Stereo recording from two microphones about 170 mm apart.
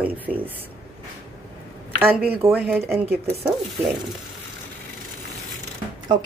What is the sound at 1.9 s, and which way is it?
Speech, 10° right (ahead or behind).